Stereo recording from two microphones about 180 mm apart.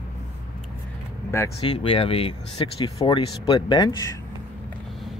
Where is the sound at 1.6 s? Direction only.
30° left (ahead or behind).